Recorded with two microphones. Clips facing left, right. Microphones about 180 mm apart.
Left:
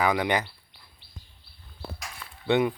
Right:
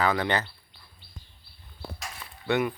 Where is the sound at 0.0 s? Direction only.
10° left (ahead or behind).